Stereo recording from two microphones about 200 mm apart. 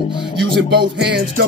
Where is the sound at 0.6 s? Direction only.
55° right (ahead or behind).